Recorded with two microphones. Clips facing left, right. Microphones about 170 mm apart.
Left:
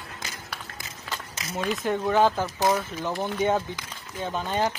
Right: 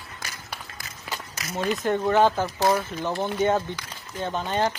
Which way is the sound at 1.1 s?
Centre (ahead or behind).